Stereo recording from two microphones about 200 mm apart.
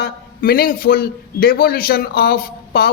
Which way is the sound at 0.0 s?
45° left (ahead or behind).